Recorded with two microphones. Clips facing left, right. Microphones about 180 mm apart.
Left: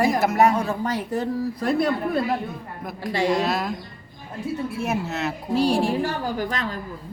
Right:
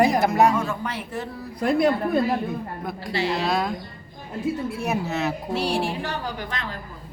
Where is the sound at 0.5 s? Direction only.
35° left (ahead or behind).